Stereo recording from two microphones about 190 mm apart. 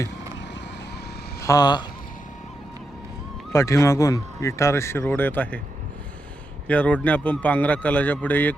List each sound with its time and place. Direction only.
1.4 s speech: 20° left (ahead or behind)
3.5 s speech: 15° left (ahead or behind)
6.7 s speech: 5° left (ahead or behind)